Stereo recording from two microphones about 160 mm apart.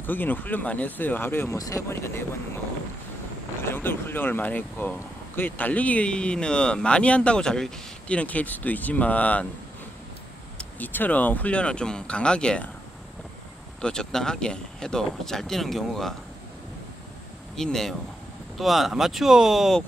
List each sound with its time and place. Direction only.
0.0 s speech: 10° left (ahead or behind)
3.6 s speech: 15° left (ahead or behind)
10.6 s speech: 10° left (ahead or behind)
13.7 s speech: 5° left (ahead or behind)
17.6 s speech: centre (ahead or behind)